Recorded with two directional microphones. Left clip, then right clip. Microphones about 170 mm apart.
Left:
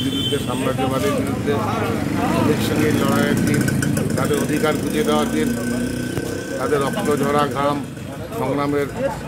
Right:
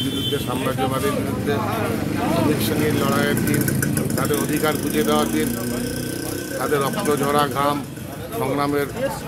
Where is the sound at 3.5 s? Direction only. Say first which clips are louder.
Left 2 dB; 55° left (ahead or behind).